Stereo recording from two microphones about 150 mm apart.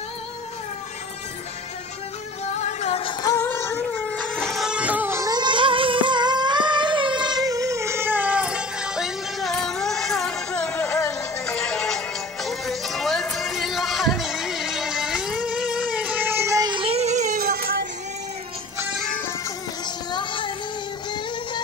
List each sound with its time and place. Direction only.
2.6 s music: 45° left (ahead or behind); by 3.3 s 30° left (ahead or behind)
3.3 s a sound: 15° left (ahead or behind)
12.4 s music: centre (ahead or behind); by 17.3 s 50° right (ahead or behind)
17.4 s music: 85° right
20.1 s music: 30° left (ahead or behind)